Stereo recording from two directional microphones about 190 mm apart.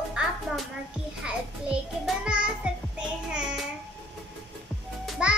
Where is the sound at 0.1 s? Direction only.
5° right (ahead or behind).